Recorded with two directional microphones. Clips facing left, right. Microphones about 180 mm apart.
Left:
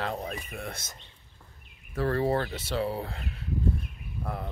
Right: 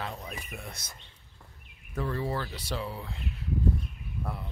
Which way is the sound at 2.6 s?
25° left (ahead or behind).